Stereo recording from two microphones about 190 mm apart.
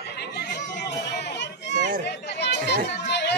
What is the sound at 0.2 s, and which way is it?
Chatter, 60° left (ahead or behind).